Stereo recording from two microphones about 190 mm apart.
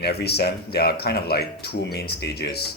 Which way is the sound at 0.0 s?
60° left (ahead or behind).